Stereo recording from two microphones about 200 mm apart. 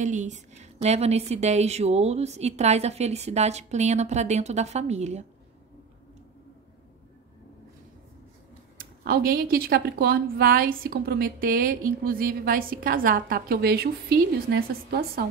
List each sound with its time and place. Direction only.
0.0 s a woman's voice: 35° right (ahead or behind)
8.7 s speech: 50° right (ahead or behind)